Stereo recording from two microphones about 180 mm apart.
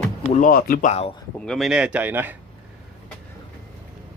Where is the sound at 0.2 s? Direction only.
40° left (ahead or behind).